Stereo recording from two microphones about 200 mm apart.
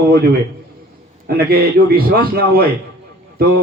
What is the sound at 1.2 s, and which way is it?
A man's voice, 50° right (ahead or behind).